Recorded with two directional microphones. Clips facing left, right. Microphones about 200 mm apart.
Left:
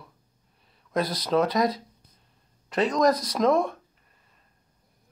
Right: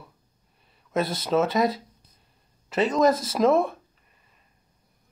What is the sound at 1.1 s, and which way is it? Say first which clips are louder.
Speech: even; 5° right (ahead or behind).